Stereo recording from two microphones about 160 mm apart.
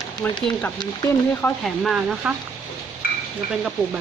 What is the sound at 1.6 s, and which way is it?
Speech, centre (ahead or behind).